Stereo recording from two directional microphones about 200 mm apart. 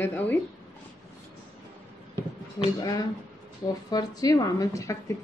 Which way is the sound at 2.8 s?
20° left (ahead or behind).